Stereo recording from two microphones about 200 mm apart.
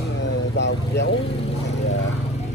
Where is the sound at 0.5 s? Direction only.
60° left (ahead or behind).